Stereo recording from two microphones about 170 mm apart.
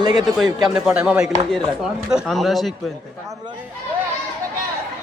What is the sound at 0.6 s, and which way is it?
Speech, 5° right (ahead or behind).